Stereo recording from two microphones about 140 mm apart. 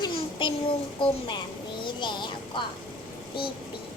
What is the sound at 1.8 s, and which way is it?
Child singing, 35° left (ahead or behind).